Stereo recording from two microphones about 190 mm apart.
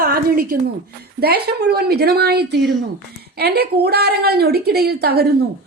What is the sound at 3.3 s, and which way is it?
A woman's voice, 55° right (ahead or behind).